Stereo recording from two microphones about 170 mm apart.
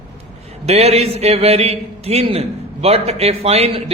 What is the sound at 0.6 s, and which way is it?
A man's voice, 40° right (ahead or behind).